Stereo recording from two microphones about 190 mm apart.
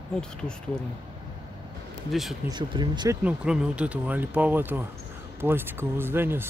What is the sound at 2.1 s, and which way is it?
Speech, centre (ahead or behind).